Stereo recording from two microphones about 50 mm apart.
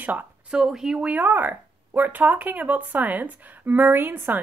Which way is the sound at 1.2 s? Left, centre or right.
Right.